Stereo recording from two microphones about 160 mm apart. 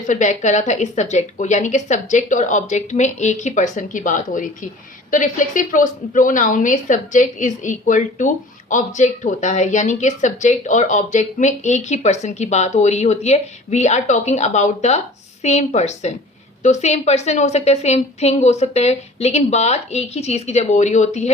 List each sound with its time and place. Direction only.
0.1 s a woman's voice: 50° left (ahead or behind)